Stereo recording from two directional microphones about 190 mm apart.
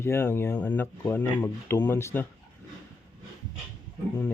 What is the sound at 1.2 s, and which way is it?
Speech, 20° left (ahead or behind).